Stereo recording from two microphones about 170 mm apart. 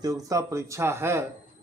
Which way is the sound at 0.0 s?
20° right (ahead or behind).